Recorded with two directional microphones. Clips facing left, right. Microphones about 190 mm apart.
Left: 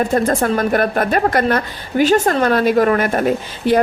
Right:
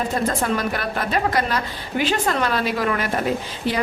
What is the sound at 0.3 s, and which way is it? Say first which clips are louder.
A woman's voice: left 6 dB; 50° left (ahead or behind).